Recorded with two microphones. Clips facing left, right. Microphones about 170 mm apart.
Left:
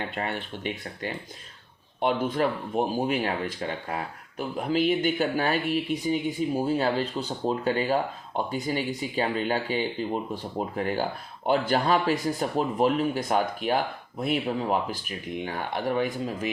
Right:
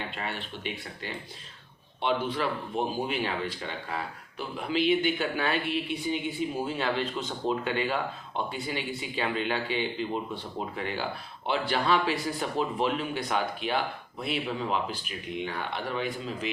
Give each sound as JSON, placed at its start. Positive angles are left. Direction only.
{"t": 0.2, "sound": "speech", "side_deg": 50}